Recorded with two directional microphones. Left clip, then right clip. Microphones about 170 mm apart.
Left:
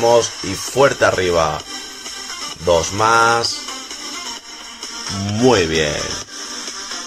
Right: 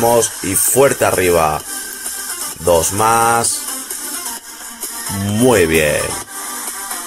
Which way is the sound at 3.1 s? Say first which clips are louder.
Left 1 dB; 20° right (ahead or behind).